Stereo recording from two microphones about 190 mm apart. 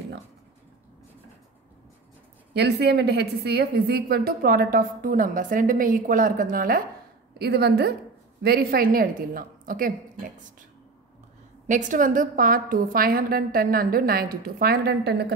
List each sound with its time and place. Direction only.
2.5 s a woman's voice: 60° right (ahead or behind)
11.6 s a woman's voice: 40° right (ahead or behind); by 15.3 s 60° right (ahead or behind)